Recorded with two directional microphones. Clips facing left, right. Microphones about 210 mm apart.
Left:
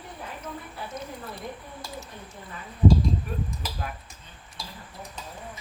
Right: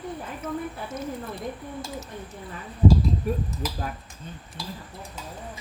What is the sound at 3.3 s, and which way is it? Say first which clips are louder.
Speech: right 7 dB; 40° right (ahead or behind).